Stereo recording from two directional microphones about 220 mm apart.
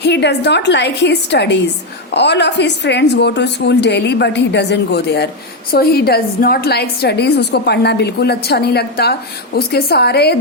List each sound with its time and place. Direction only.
0.0 s a woman's voice: 50° left (ahead or behind)